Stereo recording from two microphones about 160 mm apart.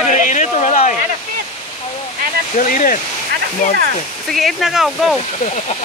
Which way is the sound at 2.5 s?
55° left (ahead or behind).